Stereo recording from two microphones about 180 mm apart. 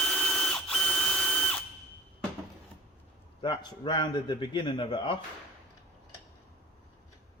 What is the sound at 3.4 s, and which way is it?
A man's voice, 25° left (ahead or behind).